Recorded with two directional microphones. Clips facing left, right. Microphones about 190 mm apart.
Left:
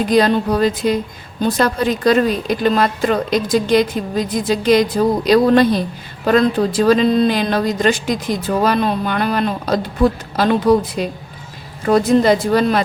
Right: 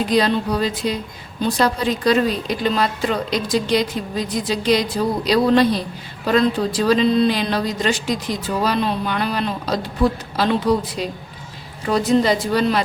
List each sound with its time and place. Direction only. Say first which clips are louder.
0.1 s a woman's voice: left 5 dB; 50° left (ahead or behind)